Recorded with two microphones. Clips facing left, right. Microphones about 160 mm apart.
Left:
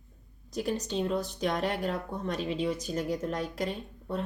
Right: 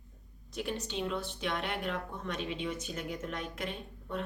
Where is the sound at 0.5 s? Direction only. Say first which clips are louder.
Left 5 dB; 40° left (ahead or behind).